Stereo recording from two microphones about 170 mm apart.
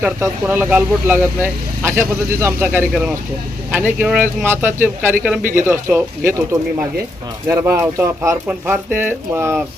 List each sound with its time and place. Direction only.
0.0 s speech: 15° right (ahead or behind)
5.4 s speech: 55° right (ahead or behind)
5.6 s speech: 10° right (ahead or behind)